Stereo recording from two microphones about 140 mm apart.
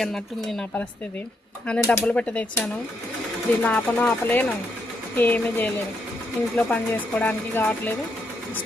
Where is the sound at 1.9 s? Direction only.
10° left (ahead or behind).